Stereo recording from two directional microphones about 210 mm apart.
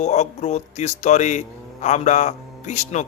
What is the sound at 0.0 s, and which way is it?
Speech, 30° left (ahead or behind).